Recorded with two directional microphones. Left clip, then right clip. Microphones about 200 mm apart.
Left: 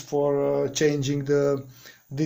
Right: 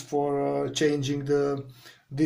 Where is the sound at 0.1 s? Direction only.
35° left (ahead or behind).